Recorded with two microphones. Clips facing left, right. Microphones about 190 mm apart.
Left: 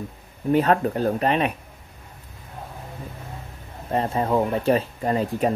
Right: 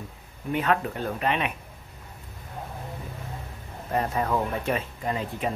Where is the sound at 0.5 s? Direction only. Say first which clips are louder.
Left 6 dB; 35° left (ahead or behind).